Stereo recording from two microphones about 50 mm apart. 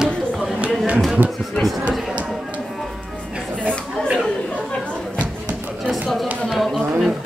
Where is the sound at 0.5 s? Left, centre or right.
Right.